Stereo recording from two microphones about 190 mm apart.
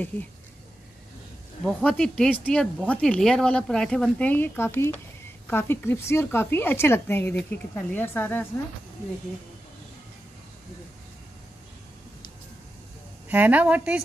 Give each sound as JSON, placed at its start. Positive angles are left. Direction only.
{"t": 1.7, "sound": "speech", "side_deg": 5}
{"t": 13.3, "sound": "a woman's voice", "side_deg": -10}